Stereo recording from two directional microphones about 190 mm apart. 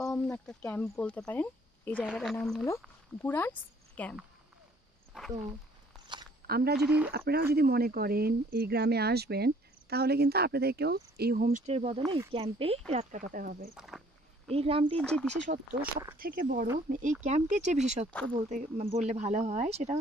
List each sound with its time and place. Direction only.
0.0 s a woman's voice: centre (ahead or behind)
5.1 s speech: centre (ahead or behind)
5.9 s a sound: centre (ahead or behind)
6.4 s a woman's voice: 55° right (ahead or behind); by 12.0 s 35° right (ahead or behind)
12.0 s speech: 20° right (ahead or behind)
12.9 s speech: 45° right (ahead or behind)
13.7 s speech: centre (ahead or behind)
14.5 s speech: 30° right (ahead or behind)
15.0 s speech: 5° left (ahead or behind)
15.5 s speech: 50° right (ahead or behind); by 20.0 s 35° right (ahead or behind)